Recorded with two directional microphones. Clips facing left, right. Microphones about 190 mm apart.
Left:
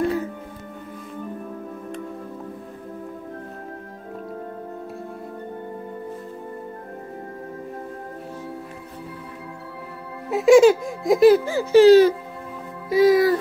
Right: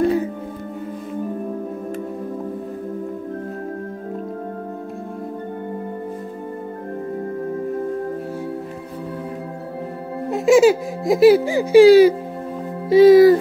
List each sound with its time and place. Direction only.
0.0 s music: 20° right (ahead or behind)
10.3 s speech: centre (ahead or behind)
12.9 s speech: 25° right (ahead or behind)